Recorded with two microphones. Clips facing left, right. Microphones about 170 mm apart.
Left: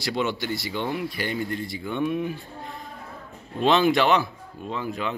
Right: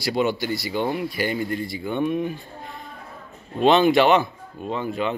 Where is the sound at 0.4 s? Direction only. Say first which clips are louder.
Right 4 dB; 5° right (ahead or behind).